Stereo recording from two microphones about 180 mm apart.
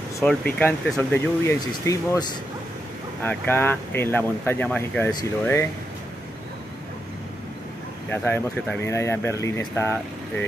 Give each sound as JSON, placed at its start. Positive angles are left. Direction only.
{"t": 0.2, "sound": "speech", "side_deg": 5}
{"t": 8.1, "sound": "speech", "side_deg": 10}